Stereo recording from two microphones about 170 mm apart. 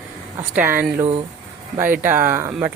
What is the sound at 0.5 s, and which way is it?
Speech, 10° right (ahead or behind).